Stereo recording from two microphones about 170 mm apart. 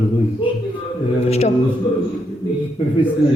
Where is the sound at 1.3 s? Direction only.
40° left (ahead or behind).